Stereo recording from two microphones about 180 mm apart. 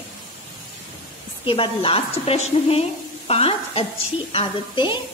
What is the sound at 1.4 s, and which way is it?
A woman's voice, 30° left (ahead or behind).